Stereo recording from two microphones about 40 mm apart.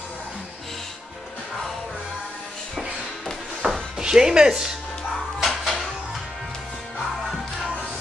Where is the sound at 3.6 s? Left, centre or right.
Right.